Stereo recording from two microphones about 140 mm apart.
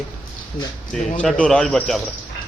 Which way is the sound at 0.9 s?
5° left (ahead or behind).